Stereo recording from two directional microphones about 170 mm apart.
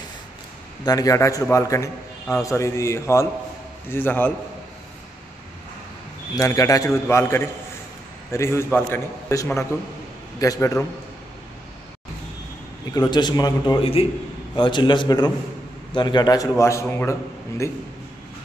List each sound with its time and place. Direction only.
0.8 s a man's voice: 20° left (ahead or behind)
6.3 s a man's voice: 20° left (ahead or behind)
12.9 s a man's voice: 25° left (ahead or behind)